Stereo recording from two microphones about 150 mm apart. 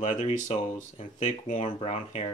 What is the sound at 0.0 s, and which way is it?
Speech, 50° left (ahead or behind).